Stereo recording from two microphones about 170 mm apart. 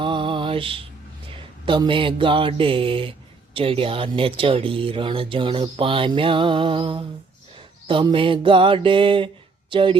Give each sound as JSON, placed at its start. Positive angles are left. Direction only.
{"t": 0.0, "sound": "mantra", "side_deg": -30}
{"t": 1.4, "sound": "speech", "side_deg": -30}
{"t": 7.9, "sound": "mantra", "side_deg": -30}